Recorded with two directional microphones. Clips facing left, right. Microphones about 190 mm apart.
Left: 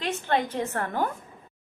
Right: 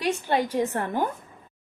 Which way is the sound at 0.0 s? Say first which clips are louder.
Right 2 dB; 10° right (ahead or behind).